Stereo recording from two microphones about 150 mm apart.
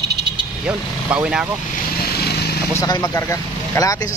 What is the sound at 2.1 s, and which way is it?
Vehicle, 90° left.